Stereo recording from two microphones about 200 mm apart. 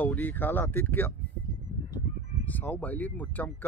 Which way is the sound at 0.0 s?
10° left (ahead or behind).